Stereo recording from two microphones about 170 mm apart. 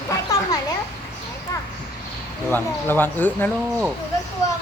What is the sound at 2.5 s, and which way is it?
Speech, 10° left (ahead or behind).